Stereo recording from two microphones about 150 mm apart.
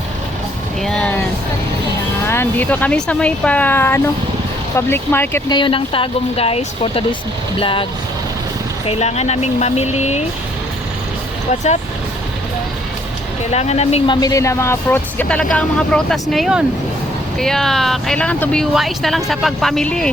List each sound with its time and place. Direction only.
0.8 s a sound: 5° left (ahead or behind)
2.2 s speech: 15° left (ahead or behind)
5.5 s speech: 30° left (ahead or behind)
8.9 s speech: 45° left (ahead or behind)
13.4 s speech: 45° left (ahead or behind)
14.1 s speech: 25° left (ahead or behind); by 20.1 s 5° left (ahead or behind)